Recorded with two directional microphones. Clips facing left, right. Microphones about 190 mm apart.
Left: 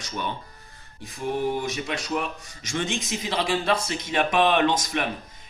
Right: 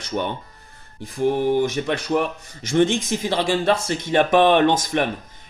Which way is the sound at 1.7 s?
55° right (ahead or behind).